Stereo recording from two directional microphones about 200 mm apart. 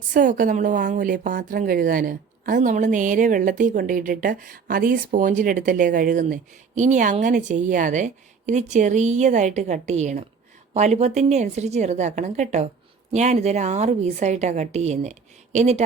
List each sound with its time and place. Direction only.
0.1 s a woman's voice: 40° right (ahead or behind)